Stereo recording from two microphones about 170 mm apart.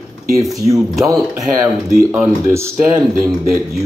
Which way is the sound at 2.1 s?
15° right (ahead or behind).